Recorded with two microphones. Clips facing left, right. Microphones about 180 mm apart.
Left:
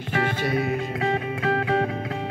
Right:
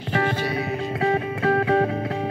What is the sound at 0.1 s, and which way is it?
Music, 40° right (ahead or behind).